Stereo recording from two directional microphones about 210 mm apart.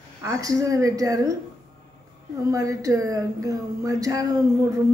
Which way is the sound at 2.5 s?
15° right (ahead or behind).